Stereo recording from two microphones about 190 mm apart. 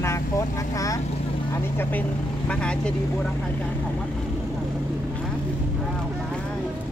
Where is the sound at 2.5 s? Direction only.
5° left (ahead or behind).